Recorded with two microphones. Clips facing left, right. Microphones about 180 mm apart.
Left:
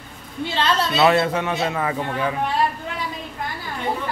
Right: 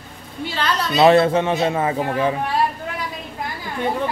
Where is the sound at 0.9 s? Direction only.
25° right (ahead or behind).